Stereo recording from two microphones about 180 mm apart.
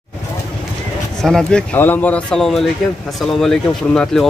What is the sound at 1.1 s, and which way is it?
A man's voice, 5° left (ahead or behind).